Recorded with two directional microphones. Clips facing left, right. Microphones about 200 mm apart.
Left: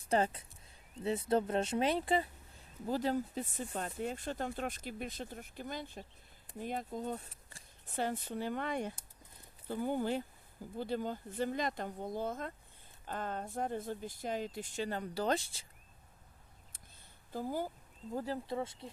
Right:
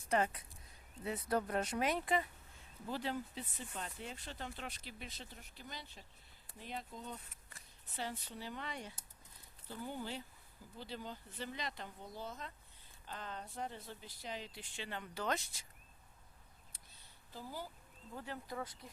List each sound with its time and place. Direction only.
0.0 s speech: 30° left (ahead or behind)
2.8 s speech: 40° left (ahead or behind)
17.3 s speech: 50° left (ahead or behind)
18.1 s speech: 35° left (ahead or behind)